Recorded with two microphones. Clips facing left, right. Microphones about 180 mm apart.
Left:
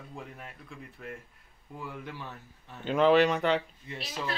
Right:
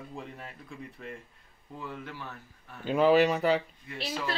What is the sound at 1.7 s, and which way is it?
Speech, 15° left (ahead or behind).